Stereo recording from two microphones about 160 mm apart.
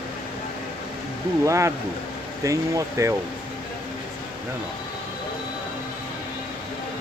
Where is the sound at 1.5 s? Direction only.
20° right (ahead or behind).